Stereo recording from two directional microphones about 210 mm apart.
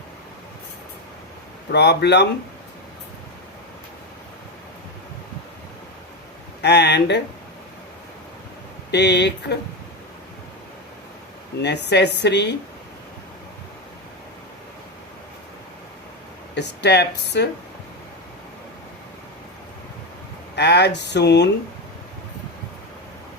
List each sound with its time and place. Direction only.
1.7 s a woman's voice: 55° left (ahead or behind)
6.6 s a woman's voice: 55° left (ahead or behind)
8.9 s a woman's voice: 55° left (ahead or behind)
11.6 s a woman's voice: 55° left (ahead or behind)
16.6 s a woman's voice: 55° left (ahead or behind)
20.6 s a woman's voice: 55° left (ahead or behind)